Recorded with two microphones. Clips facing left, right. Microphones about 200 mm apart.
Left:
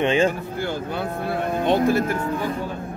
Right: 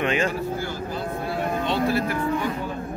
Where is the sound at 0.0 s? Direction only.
30° left (ahead or behind).